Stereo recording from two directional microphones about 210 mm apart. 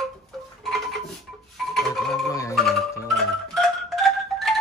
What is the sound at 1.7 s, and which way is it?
Music, centre (ahead or behind).